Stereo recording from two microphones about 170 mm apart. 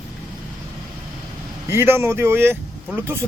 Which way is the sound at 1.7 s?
15° right (ahead or behind).